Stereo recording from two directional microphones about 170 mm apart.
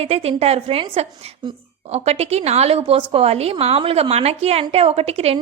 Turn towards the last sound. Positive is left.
turn(degrees=-35)  # may be behind; listen again after turning